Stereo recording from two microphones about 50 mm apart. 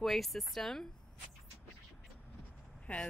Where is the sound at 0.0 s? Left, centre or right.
Centre.